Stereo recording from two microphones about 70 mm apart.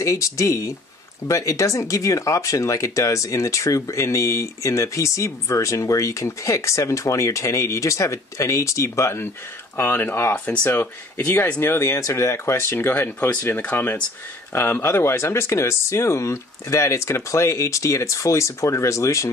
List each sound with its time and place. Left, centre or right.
0.0 s speech: left
10.3 s speech: left